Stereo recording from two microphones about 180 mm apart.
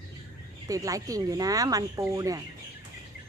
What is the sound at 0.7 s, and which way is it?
Speech, 20° right (ahead or behind).